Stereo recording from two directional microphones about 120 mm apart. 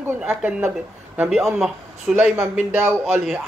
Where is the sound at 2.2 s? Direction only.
15° right (ahead or behind).